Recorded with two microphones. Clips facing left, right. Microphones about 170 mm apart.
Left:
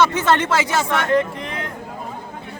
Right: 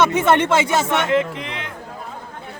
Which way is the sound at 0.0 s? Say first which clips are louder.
Right 1 dB; 20° right (ahead or behind).